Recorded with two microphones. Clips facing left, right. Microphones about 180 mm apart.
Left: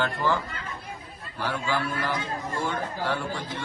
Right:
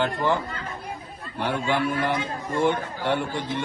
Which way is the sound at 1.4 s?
25° right (ahead or behind).